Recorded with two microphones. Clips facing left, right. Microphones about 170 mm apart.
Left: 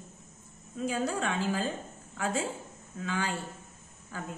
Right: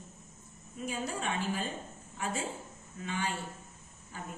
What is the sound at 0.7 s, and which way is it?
A woman's voice, 90° left.